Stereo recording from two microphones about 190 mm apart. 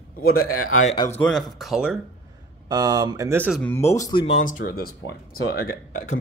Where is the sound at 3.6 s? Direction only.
15° left (ahead or behind).